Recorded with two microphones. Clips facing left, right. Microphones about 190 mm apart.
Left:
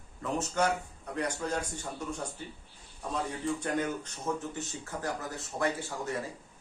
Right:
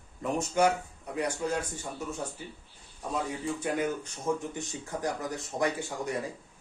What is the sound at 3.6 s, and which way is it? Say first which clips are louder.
Speech: right 2 dB; 10° right (ahead or behind).